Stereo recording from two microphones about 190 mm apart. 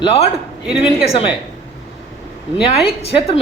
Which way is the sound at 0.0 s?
30° left (ahead or behind).